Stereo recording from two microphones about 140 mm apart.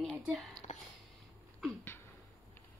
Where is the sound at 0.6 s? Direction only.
60° left (ahead or behind).